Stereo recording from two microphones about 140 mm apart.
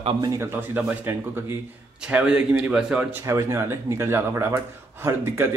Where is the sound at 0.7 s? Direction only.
15° right (ahead or behind).